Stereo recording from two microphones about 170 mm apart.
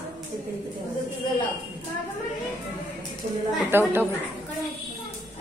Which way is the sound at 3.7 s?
10° right (ahead or behind).